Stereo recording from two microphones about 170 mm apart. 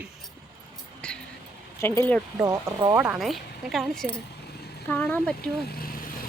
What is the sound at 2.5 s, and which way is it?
Speech, 20° right (ahead or behind).